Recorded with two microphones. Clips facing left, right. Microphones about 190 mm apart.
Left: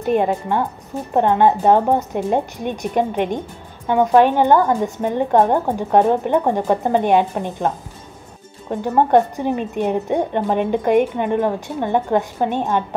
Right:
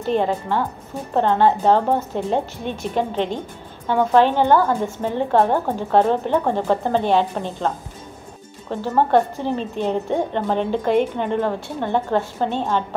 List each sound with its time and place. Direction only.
0.1 s a woman's voice: 10° left (ahead or behind)